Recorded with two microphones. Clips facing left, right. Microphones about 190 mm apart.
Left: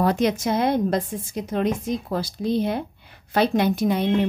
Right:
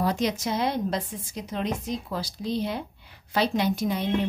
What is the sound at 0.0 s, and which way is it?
A woman's voice, 55° left (ahead or behind).